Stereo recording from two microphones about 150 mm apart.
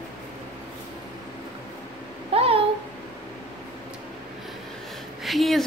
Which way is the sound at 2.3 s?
40° right (ahead or behind).